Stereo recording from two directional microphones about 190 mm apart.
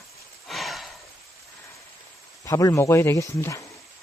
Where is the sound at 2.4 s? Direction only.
15° left (ahead or behind).